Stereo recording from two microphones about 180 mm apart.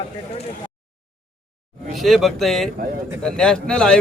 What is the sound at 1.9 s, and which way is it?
Speech, centre (ahead or behind).